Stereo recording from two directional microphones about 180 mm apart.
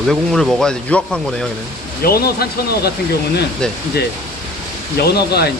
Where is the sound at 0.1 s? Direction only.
Centre (ahead or behind).